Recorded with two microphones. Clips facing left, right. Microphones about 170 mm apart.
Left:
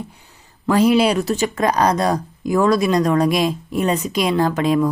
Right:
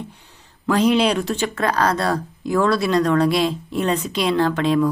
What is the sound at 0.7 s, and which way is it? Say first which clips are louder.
Speech: left 2 dB; 10° left (ahead or behind).